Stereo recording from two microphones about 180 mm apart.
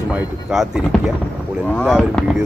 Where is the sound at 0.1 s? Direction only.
5° right (ahead or behind).